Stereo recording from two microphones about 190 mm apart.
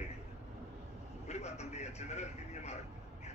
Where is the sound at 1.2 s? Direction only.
35° left (ahead or behind).